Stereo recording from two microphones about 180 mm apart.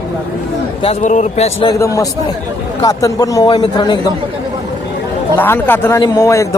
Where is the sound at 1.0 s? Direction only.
40° left (ahead or behind).